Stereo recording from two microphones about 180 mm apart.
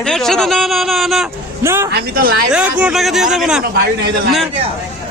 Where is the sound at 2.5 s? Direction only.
5° right (ahead or behind).